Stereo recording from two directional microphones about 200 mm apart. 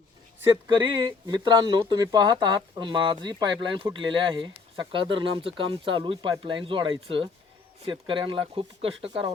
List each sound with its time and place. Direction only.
0.4 s speech: 20° right (ahead or behind)